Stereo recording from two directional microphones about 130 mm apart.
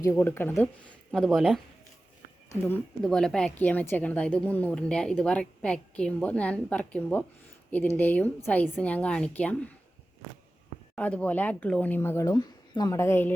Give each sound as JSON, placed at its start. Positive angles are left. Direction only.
{"t": 0.0, "sound": "a woman's voice", "side_deg": 20}
{"t": 3.0, "sound": "a woman's voice", "side_deg": 5}
{"t": 10.9, "sound": "a woman's voice", "side_deg": 10}
{"t": 13.0, "sound": "a woman's voice", "side_deg": 15}